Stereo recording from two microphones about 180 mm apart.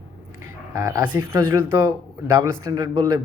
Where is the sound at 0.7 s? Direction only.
15° right (ahead or behind).